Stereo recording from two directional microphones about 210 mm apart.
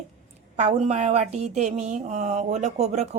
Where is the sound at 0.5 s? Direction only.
30° right (ahead or behind).